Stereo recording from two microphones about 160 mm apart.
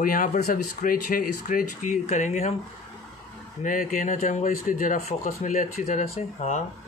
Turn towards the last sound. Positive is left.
turn(degrees=45)  # may be behind; listen again after turning